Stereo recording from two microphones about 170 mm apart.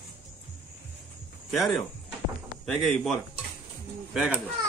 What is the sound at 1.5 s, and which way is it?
A man's voice, centre (ahead or behind).